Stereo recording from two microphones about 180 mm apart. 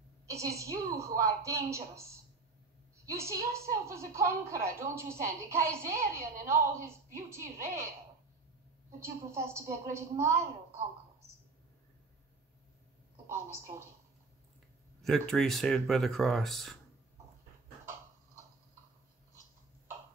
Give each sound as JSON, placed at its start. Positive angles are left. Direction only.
{"t": 0.3, "sound": "a woman's voice", "side_deg": -15}
{"t": 9.0, "sound": "a woman's voice", "side_deg": -15}
{"t": 13.3, "sound": "a woman's voice", "side_deg": -15}
{"t": 15.0, "sound": "speech", "side_deg": 0}